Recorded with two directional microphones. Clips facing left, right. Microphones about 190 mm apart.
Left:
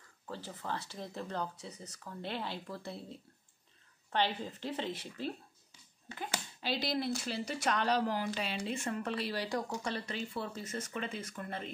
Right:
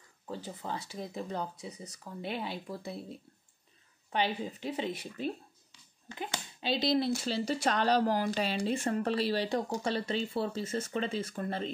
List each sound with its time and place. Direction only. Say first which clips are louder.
0.3 s speech: right 2 dB; 15° right (ahead or behind)